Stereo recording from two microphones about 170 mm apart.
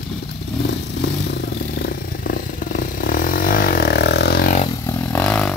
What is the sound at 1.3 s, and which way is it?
Vehicle, 70° left (ahead or behind).